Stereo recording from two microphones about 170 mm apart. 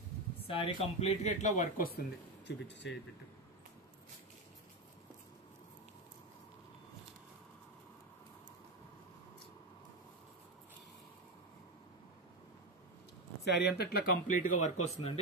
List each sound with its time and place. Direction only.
0.5 s speech: 30° left (ahead or behind)
0.9 s speech: 40° left (ahead or behind)
2.0 s speech: 90° left
13.4 s speech: 75° left (ahead or behind); by 15.1 s 45° left (ahead or behind)